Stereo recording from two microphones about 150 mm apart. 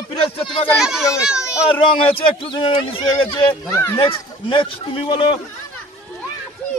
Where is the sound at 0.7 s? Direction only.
5° right (ahead or behind).